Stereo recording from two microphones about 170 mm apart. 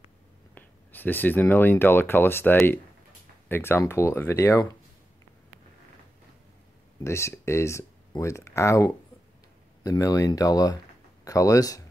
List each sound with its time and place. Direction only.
0.6 s speech: 10° left (ahead or behind)
7.0 s speech: 15° left (ahead or behind)